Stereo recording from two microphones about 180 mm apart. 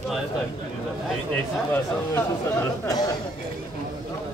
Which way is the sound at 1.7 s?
15° left (ahead or behind).